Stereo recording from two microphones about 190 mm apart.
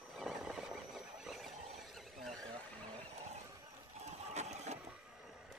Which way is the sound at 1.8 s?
Centre (ahead or behind).